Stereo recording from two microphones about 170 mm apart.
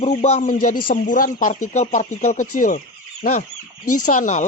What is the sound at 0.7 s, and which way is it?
Speech, 55° left (ahead or behind).